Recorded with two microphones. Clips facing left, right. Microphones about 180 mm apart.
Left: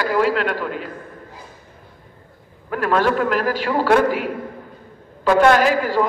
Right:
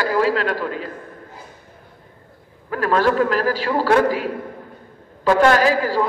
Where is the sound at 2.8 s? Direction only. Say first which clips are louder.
Right 1 dB; 35° right (ahead or behind).